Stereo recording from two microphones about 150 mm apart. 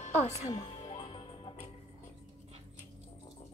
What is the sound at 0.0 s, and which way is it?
Speech, 45° left (ahead or behind).